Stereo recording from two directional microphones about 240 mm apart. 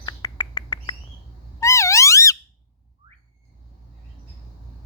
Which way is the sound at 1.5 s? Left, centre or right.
Centre.